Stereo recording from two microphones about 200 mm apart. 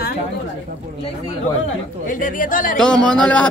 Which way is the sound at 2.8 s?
5° left (ahead or behind).